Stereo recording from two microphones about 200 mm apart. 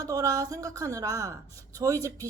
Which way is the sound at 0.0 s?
15° right (ahead or behind).